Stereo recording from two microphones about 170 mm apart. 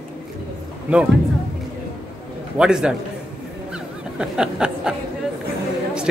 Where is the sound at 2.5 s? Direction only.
5° right (ahead or behind).